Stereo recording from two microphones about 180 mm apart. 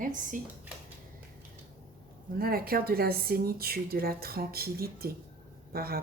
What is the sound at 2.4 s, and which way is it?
Speech, 55° right (ahead or behind).